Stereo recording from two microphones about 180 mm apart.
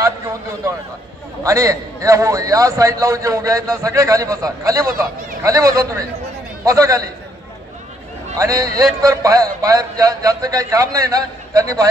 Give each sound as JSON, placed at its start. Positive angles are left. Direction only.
{"t": 1.4, "sound": "a man's voice", "side_deg": -20}
{"t": 8.4, "sound": "speech", "side_deg": -20}